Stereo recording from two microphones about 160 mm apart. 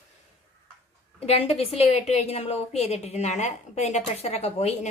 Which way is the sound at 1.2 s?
40° left (ahead or behind).